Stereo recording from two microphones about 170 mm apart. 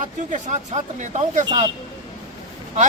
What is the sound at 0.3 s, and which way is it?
Speech, 45° right (ahead or behind).